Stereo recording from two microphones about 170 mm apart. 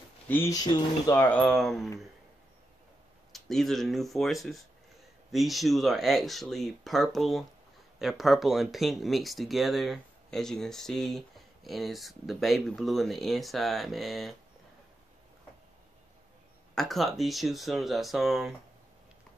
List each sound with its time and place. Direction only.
0.3 s speech: 15° left (ahead or behind)
1.2 s speech: 5° left (ahead or behind)
3.3 s speech: centre (ahead or behind)
16.7 s speech: centre (ahead or behind)